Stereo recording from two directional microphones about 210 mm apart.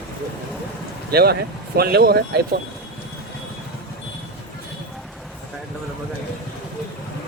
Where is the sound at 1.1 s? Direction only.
50° right (ahead or behind).